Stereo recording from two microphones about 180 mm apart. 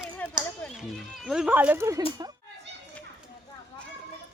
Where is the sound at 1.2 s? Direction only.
5° right (ahead or behind).